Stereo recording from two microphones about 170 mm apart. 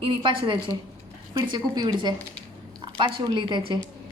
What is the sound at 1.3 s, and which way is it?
A woman's voice, 25° right (ahead or behind).